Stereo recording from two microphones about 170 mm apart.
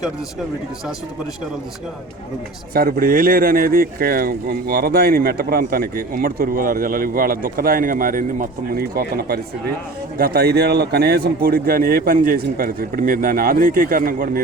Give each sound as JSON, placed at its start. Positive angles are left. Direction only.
{"t": 2.7, "sound": "speech", "side_deg": -60}